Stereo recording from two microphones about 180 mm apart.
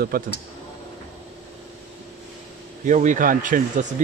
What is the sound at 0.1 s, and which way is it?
Speech, 55° right (ahead or behind).